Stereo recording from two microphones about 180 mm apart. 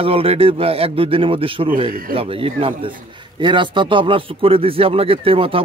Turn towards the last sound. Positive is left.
turn(degrees=-30)  # may be behind; listen again after turning